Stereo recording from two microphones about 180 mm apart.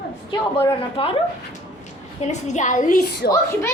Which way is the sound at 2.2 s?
40° left (ahead or behind).